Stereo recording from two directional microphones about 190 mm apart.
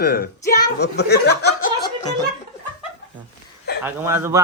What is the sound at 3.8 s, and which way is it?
Speech, 10° right (ahead or behind).